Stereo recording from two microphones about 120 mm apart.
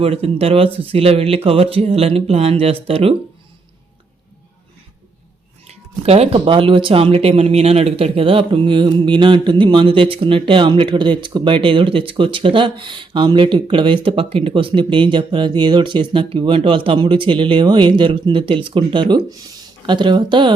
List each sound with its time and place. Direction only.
0.0 s speech: 55° right (ahead or behind)
5.6 s speech: 60° right (ahead or behind); by 20.5 s 40° right (ahead or behind)